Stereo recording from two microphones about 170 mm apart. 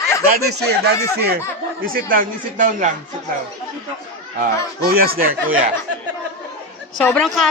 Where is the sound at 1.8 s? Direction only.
55° right (ahead or behind).